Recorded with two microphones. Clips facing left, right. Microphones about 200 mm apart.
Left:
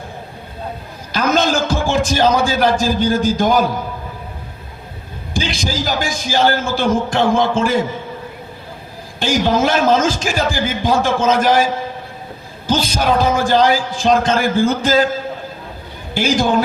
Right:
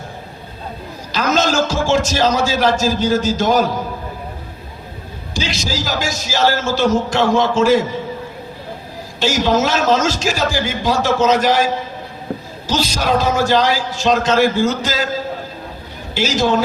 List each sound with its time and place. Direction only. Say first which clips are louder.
1.1 s a man's voice: even; 55° left (ahead or behind)
5.3 s a man's voice: left 1 dB; 55° left (ahead or behind)
9.2 s a man's voice: even; 50° left (ahead or behind)
16.1 s a man's voice: left 1 dB; 55° left (ahead or behind)